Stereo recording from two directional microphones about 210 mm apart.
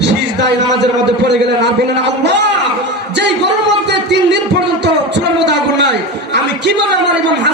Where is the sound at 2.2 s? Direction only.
55° right (ahead or behind).